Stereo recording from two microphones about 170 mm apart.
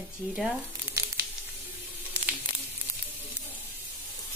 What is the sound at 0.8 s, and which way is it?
Sizzle, 15° right (ahead or behind).